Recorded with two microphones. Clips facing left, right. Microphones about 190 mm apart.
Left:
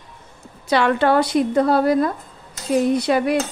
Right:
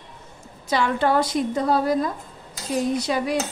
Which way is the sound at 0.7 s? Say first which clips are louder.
Left 4 dB; 70° left (ahead or behind).